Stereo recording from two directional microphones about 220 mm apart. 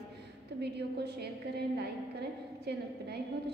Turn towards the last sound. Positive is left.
turn(degrees=-50)  # may be behind; listen again after turning